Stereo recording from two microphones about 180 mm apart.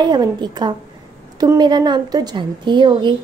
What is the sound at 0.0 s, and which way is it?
A woman's voice, 25° right (ahead or behind).